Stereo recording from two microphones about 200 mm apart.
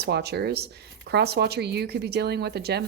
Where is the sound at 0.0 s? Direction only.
55° right (ahead or behind).